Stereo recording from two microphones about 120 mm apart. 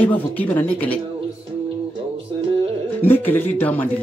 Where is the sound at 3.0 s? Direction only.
15° left (ahead or behind).